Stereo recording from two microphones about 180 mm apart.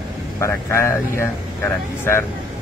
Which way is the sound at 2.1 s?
15° left (ahead or behind).